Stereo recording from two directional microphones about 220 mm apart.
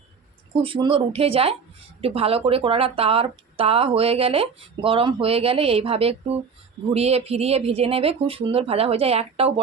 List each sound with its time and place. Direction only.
0.5 s speech: 25° right (ahead or behind)